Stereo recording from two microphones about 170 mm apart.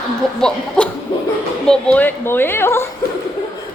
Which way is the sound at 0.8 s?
5° left (ahead or behind).